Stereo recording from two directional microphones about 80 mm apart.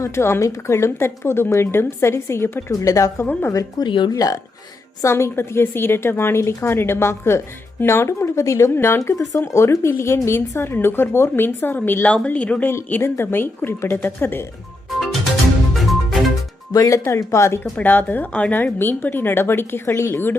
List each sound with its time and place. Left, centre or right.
0.0 s a woman's voice: left
2.8 s speech: left
3.8 s speech: left
4.1 s speech: left
5.0 s a woman's voice: left
9.0 s a woman's voice: left
12.0 s speech: centre
12.6 s a woman's voice: left
14.8 s music: centre
16.7 s a woman's voice: left
17.7 s a woman's voice: left